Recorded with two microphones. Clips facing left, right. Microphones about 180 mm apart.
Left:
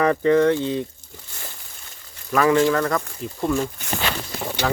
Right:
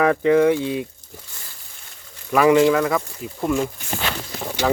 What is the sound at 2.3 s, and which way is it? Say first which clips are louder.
Speech: right 3 dB; 10° right (ahead or behind).